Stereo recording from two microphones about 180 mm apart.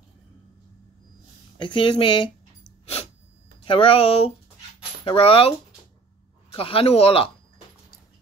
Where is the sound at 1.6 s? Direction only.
30° left (ahead or behind).